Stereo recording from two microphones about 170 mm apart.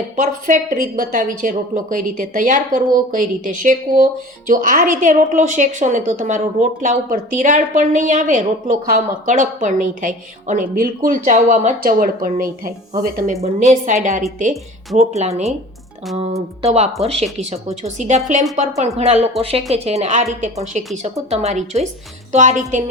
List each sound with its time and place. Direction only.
0.2 s a woman's voice: 50° right (ahead or behind)
16.6 s a woman's voice: 40° right (ahead or behind)